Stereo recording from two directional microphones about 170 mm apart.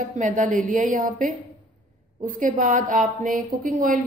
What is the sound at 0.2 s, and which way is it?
A woman's voice, 50° right (ahead or behind).